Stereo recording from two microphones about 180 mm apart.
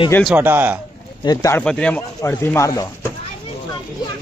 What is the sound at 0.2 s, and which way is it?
Speech, 5° right (ahead or behind).